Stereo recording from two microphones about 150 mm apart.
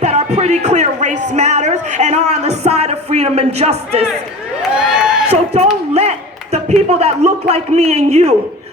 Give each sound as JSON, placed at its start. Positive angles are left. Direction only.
{"t": 0.0, "sound": "speech", "side_deg": -45}
{"t": 4.8, "sound": "crowd", "side_deg": -5}
{"t": 5.9, "sound": "a man's voice", "side_deg": -45}